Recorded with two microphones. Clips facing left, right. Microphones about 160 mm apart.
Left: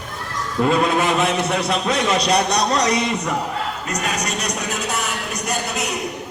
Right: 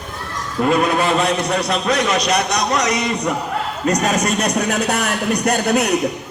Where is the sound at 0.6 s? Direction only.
25° left (ahead or behind).